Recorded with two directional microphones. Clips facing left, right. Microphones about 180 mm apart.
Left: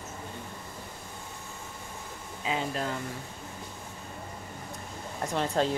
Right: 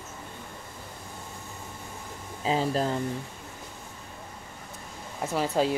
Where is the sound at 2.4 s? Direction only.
35° right (ahead or behind).